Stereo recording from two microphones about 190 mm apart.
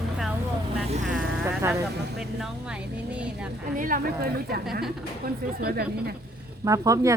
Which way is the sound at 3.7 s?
45° right (ahead or behind).